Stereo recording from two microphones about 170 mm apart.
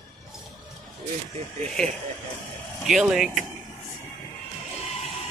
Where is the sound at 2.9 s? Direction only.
Centre (ahead or behind).